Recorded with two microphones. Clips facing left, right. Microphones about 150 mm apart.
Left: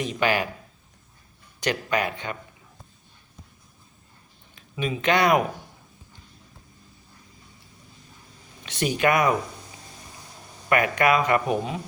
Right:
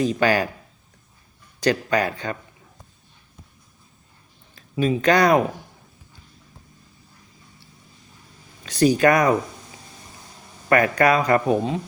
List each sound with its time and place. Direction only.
0.0 s speech: 35° right (ahead or behind)
1.6 s speech: 35° right (ahead or behind)
4.5 s speech: 35° right (ahead or behind)
8.6 s speech: 35° right (ahead or behind)
10.7 s speech: 35° right (ahead or behind)